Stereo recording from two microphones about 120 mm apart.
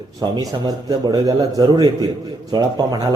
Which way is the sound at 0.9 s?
30° right (ahead or behind).